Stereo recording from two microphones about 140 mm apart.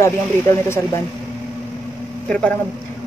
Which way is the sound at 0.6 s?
15° left (ahead or behind).